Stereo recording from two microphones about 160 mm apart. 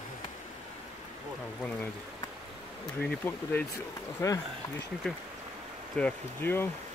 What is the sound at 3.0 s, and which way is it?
Bee, 10° left (ahead or behind).